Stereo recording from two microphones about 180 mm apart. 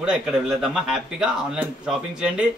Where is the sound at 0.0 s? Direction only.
5° right (ahead or behind).